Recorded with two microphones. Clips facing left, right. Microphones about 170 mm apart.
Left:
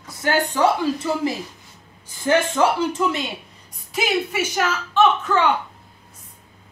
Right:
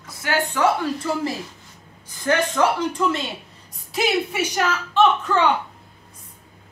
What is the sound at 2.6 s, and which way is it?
Speech, 10° left (ahead or behind).